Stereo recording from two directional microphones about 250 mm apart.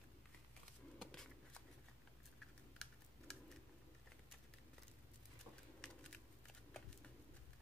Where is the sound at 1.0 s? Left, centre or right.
Centre.